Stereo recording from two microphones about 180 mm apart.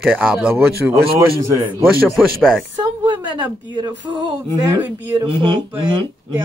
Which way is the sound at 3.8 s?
25° right (ahead or behind).